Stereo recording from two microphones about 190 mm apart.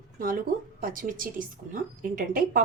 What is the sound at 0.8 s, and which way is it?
A woman's voice, 45° right (ahead or behind).